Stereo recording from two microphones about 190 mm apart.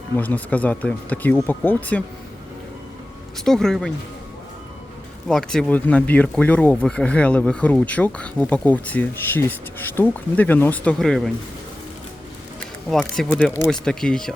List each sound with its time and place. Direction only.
0.2 s speech: 10° left (ahead or behind)
3.4 s speech: centre (ahead or behind)
5.3 s speech: 5° left (ahead or behind)
12.9 s speech: 5° left (ahead or behind)
13.3 s speech: 15° left (ahead or behind)
13.7 s speech: 5° left (ahead or behind)